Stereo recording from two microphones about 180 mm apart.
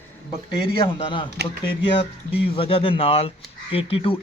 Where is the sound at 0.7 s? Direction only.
30° left (ahead or behind).